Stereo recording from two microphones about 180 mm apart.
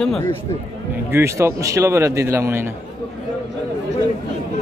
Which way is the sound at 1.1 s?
15° right (ahead or behind).